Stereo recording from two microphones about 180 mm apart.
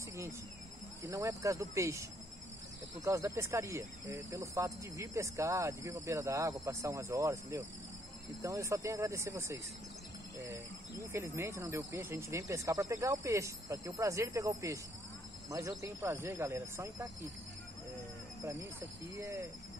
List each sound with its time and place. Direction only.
1.0 s speech: 15° right (ahead or behind)
18.4 s speech: 10° right (ahead or behind)